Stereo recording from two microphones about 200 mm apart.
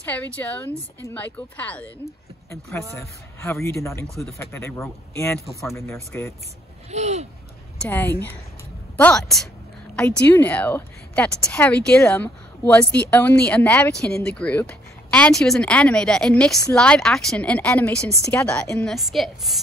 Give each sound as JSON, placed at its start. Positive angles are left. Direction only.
{"t": 0.0, "sound": "a woman's voice", "side_deg": 10}
{"t": 4.1, "sound": "speech", "side_deg": 0}
{"t": 4.4, "sound": "a woman's voice", "side_deg": 15}
{"t": 6.9, "sound": "a sound", "side_deg": -35}
{"t": 7.8, "sound": "a woman's voice", "side_deg": 10}